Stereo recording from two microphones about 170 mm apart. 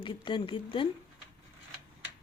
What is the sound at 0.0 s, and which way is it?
Speech, 30° left (ahead or behind).